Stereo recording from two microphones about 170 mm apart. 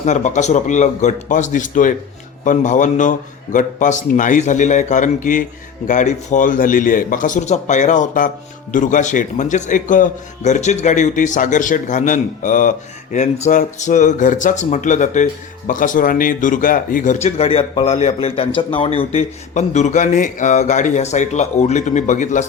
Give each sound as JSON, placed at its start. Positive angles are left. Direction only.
{"t": 0.0, "sound": "a man's voice", "side_deg": 45}